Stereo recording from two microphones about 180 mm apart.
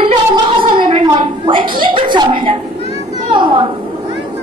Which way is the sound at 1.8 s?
25° right (ahead or behind).